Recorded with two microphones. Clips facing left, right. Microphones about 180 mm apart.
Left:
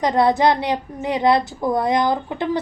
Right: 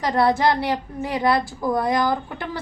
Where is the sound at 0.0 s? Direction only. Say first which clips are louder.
Left 3 dB; 20° left (ahead or behind).